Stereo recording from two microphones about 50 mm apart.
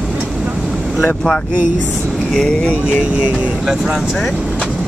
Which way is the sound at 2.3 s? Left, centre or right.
Centre.